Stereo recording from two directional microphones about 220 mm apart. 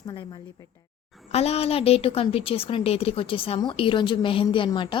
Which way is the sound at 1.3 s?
30° left (ahead or behind).